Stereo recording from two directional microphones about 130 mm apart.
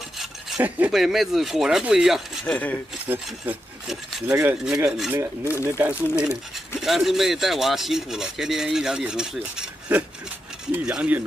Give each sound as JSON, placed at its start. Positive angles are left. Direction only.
{"t": 0.6, "sound": "speech", "side_deg": -15}
{"t": 0.9, "sound": "speech", "side_deg": 0}
{"t": 2.4, "sound": "speech", "side_deg": 10}
{"t": 3.1, "sound": "speech", "side_deg": -15}
{"t": 6.8, "sound": "speech", "side_deg": 0}